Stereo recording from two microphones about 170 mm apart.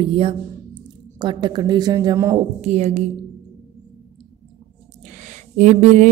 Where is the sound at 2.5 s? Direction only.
40° right (ahead or behind).